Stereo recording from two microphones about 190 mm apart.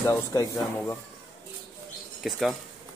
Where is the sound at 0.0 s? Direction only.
15° left (ahead or behind).